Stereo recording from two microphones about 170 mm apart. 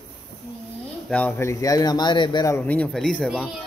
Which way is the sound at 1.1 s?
15° left (ahead or behind).